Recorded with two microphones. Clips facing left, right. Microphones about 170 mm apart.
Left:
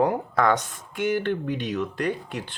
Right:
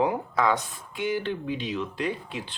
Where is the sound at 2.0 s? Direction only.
50° left (ahead or behind).